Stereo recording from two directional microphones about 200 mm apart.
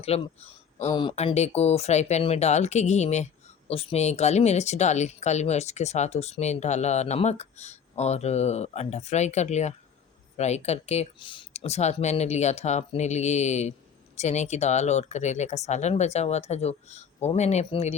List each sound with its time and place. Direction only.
0.0 s speech: 30° left (ahead or behind)